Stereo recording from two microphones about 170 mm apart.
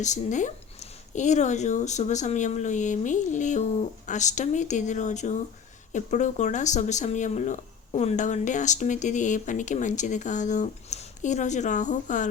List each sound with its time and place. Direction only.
0.0 s speech: 45° left (ahead or behind)